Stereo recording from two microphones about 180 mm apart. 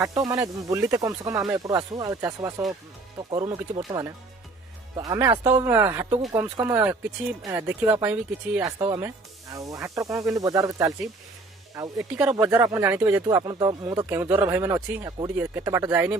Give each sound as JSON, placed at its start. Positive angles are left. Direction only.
{"t": 0.0, "sound": "speech", "side_deg": -20}
{"t": 4.9, "sound": "speech", "side_deg": -20}
{"t": 8.6, "sound": "speech", "side_deg": -20}
{"t": 12.2, "sound": "speech", "side_deg": -5}
{"t": 13.4, "sound": "speech", "side_deg": -25}